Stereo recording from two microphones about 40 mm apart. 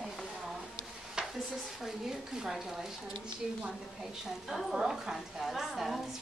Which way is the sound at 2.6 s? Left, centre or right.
Centre.